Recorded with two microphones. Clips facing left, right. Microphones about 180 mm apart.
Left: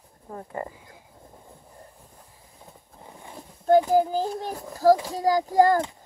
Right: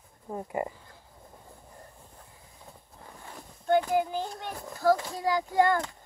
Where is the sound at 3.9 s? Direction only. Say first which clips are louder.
Left 6 dB; 35° left (ahead or behind).